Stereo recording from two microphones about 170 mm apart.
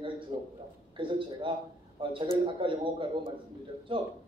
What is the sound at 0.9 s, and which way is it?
A woman's voice, 30° right (ahead or behind).